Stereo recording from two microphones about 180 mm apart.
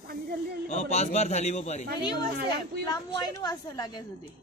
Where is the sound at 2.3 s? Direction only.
65° right (ahead or behind).